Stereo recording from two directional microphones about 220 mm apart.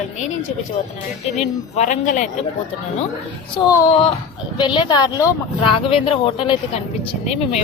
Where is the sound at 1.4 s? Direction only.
30° left (ahead or behind).